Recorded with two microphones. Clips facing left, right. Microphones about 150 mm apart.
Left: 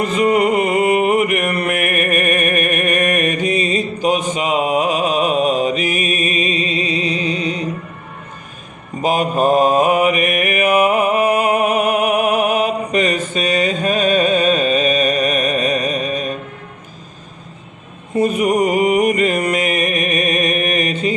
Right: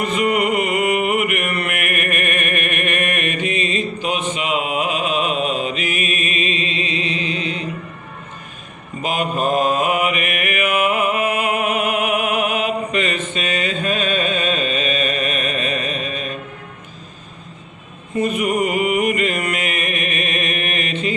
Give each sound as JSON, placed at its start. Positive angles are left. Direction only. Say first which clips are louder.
{"t": 0.0, "sound": "mantra", "louder": "left 4 dB", "side_deg": 35}
{"t": 9.0, "sound": "mantra", "louder": "left 5 dB", "side_deg": 35}
{"t": 18.2, "sound": "mantra", "louder": "left 4 dB", "side_deg": 35}